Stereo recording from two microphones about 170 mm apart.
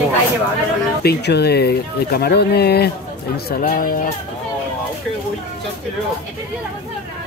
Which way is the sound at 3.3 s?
55° left (ahead or behind).